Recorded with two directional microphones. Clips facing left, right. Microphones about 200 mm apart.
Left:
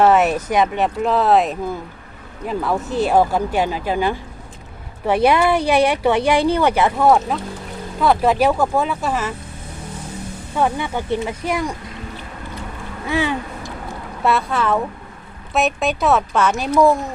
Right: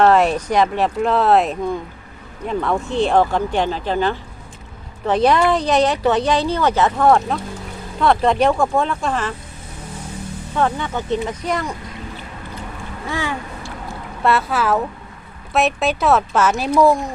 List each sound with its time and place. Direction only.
0.0 s speech: 5° left (ahead or behind)
10.5 s speech: 10° left (ahead or behind)
13.1 s speech: 15° left (ahead or behind)
14.3 s speech: 5° right (ahead or behind)